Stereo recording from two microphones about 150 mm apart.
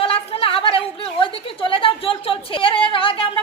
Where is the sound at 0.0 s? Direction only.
40° left (ahead or behind).